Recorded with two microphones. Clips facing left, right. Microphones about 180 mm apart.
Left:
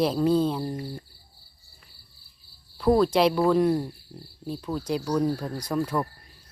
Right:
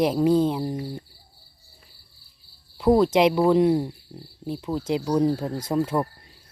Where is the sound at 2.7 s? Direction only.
20° right (ahead or behind).